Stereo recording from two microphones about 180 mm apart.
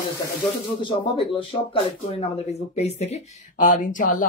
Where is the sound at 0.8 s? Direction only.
30° left (ahead or behind); by 4.2 s 45° left (ahead or behind).